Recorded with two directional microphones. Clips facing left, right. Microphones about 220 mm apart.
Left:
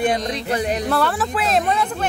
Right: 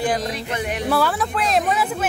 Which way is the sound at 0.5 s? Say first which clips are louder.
Left 8 dB; 35° left (ahead or behind).